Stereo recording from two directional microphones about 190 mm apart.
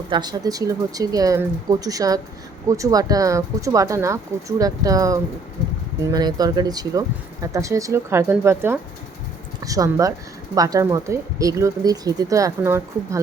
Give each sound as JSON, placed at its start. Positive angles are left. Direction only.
{"t": 0.1, "sound": "speech", "side_deg": -20}